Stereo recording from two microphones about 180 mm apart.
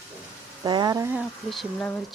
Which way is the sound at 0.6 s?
25° right (ahead or behind).